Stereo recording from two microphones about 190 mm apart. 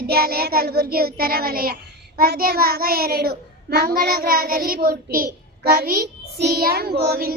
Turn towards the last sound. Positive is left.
turn(degrees=-55)  # may be behind; listen again after turning